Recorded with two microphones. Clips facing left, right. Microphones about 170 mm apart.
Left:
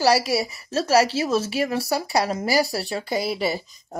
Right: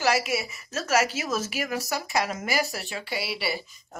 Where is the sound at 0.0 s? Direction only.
35° left (ahead or behind).